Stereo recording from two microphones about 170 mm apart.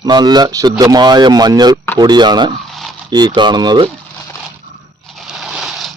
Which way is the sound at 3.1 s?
25° right (ahead or behind).